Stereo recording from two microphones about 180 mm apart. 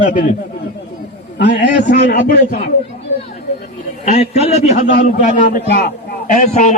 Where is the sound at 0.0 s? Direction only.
45° left (ahead or behind).